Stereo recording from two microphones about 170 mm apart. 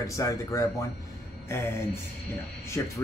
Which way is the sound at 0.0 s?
20° left (ahead or behind).